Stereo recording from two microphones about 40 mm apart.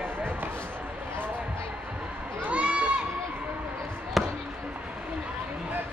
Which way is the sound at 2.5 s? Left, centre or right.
Right.